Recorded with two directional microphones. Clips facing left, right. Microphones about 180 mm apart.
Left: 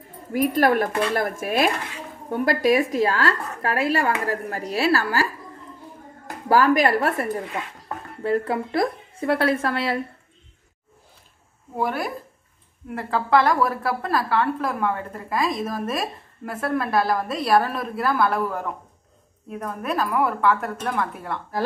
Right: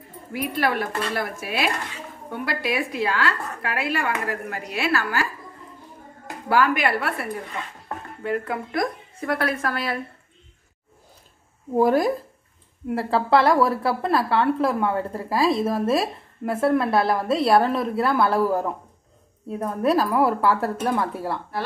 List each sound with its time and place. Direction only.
0.3 s speech: 45° left (ahead or behind)
6.5 s a woman's voice: 40° left (ahead or behind)
11.8 s a woman's voice: 40° right (ahead or behind)